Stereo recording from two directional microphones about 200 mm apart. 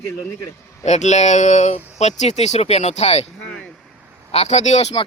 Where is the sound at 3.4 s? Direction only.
5° left (ahead or behind).